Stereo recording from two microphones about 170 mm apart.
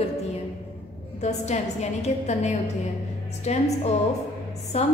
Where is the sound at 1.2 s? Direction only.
40° left (ahead or behind).